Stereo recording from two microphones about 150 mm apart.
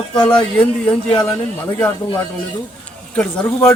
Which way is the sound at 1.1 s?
35° left (ahead or behind).